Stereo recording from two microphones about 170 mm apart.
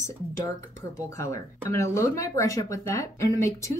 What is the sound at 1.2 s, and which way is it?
Speech, 15° left (ahead or behind).